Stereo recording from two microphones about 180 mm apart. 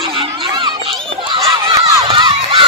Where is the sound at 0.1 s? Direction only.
25° right (ahead or behind).